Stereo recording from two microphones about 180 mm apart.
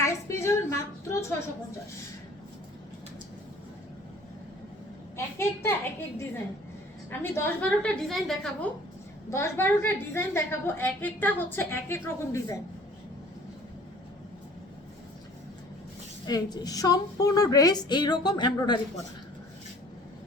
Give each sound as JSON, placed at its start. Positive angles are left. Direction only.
{"t": 0.0, "sound": "a sound", "side_deg": 15}
{"t": 5.1, "sound": "a woman's voice", "side_deg": 15}
{"t": 8.0, "sound": "a woman's voice", "side_deg": 0}
{"t": 9.3, "sound": "a woman's voice", "side_deg": 15}
{"t": 16.2, "sound": "a woman's voice", "side_deg": 20}